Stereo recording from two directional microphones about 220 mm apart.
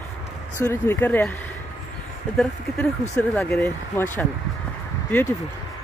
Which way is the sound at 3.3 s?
5° left (ahead or behind).